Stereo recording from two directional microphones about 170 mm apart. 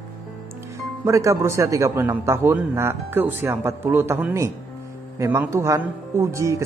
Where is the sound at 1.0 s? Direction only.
20° right (ahead or behind).